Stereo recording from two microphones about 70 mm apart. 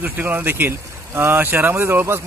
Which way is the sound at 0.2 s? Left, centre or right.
Right.